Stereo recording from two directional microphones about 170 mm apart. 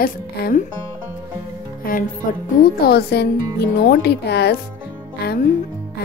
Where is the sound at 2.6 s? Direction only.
65° left (ahead or behind).